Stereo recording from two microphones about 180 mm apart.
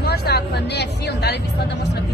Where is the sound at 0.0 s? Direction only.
60° left (ahead or behind).